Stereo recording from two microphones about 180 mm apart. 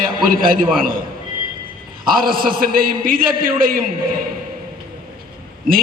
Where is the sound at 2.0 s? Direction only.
55° right (ahead or behind).